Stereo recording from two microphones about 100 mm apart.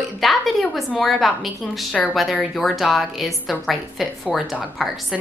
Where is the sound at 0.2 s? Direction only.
Centre (ahead or behind).